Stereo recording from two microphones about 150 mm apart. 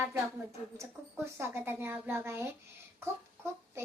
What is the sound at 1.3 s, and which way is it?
A woman's voice, 15° right (ahead or behind).